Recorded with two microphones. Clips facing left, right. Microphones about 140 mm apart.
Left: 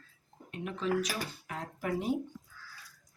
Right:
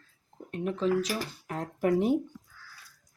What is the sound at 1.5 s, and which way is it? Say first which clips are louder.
Speech: right 10 dB; 50° right (ahead or behind).